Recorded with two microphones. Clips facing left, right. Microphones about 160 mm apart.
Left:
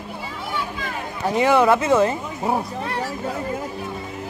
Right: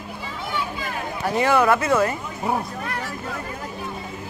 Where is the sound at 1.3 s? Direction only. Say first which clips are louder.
Left 2 dB; 15° left (ahead or behind).